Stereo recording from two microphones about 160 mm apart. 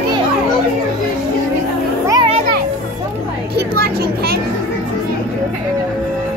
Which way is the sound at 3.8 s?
75° right (ahead or behind).